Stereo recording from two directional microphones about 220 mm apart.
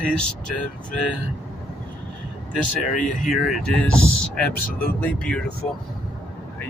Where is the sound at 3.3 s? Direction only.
Centre (ahead or behind).